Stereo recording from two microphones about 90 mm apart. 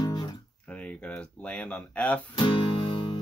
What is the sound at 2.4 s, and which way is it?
Music, 65° left (ahead or behind).